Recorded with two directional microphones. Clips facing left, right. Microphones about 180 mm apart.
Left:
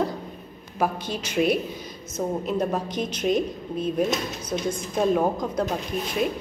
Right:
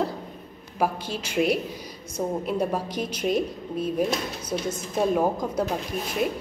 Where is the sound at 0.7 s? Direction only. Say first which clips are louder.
Even; 10° right (ahead or behind).